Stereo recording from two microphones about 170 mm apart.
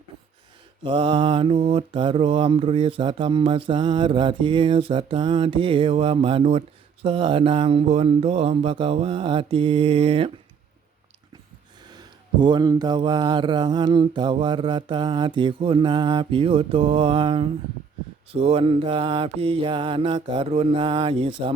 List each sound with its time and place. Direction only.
0.9 s mantra: 30° right (ahead or behind)
12.4 s mantra: 25° right (ahead or behind)